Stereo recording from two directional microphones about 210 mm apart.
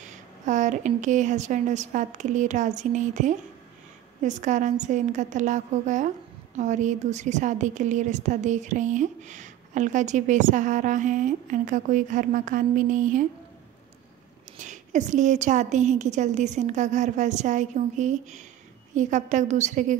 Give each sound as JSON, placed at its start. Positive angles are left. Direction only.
{"t": 0.1, "sound": "a woman's voice", "side_deg": -35}
{"t": 14.6, "sound": "a woman's voice", "side_deg": -35}